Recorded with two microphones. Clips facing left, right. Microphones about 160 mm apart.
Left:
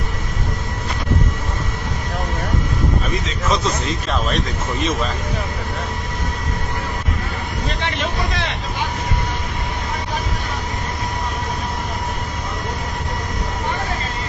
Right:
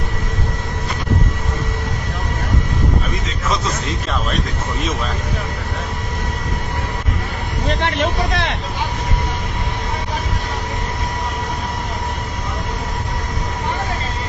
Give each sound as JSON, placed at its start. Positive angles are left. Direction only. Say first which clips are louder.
{"t": 7.8, "sound": "speech", "louder": "right 4 dB", "side_deg": -55}